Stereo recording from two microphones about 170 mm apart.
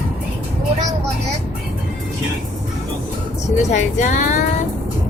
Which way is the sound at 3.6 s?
45° left (ahead or behind).